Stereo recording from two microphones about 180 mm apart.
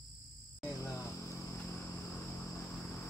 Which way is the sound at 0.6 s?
15° left (ahead or behind).